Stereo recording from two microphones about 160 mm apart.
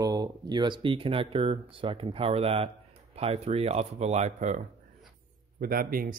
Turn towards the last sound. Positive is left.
turn(degrees=-65)  # may be behind; listen again after turning